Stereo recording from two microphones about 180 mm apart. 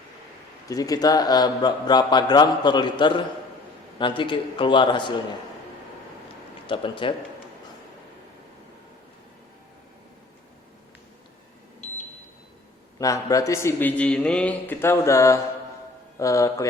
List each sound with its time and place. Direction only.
0.7 s a man's voice: 20° left (ahead or behind)
6.7 s a man's voice: 25° left (ahead or behind)
13.0 s a man's voice: 20° left (ahead or behind)